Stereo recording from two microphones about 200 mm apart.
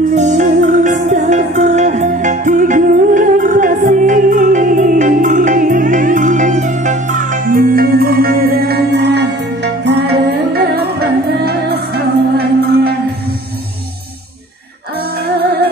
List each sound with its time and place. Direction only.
0.1 s music: 35° right (ahead or behind); by 12.9 s 50° right (ahead or behind)